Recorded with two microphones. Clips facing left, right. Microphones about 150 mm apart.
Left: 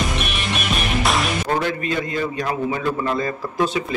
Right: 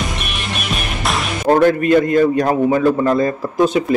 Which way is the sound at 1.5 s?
50° right (ahead or behind).